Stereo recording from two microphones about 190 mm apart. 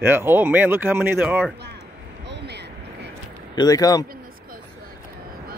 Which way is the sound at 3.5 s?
20° left (ahead or behind).